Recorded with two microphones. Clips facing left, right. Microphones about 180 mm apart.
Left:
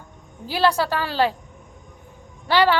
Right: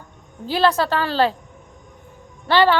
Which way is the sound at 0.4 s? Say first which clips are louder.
Right 2 dB; 10° left (ahead or behind).